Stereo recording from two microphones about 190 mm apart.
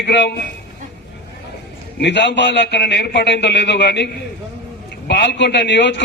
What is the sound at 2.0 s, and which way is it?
A man's voice, 65° left (ahead or behind).